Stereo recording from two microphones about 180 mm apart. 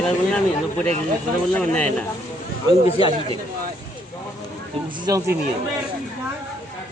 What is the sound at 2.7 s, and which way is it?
Speech, 30° left (ahead or behind).